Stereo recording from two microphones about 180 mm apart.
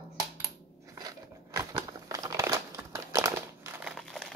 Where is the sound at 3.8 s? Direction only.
Centre (ahead or behind).